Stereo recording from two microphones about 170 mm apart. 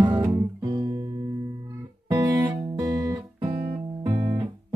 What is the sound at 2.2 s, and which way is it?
Music, 20° right (ahead or behind).